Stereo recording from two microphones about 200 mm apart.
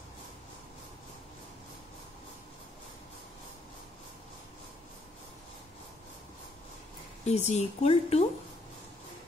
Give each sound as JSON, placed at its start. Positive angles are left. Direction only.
{"t": 7.2, "sound": "a woman's voice", "side_deg": 35}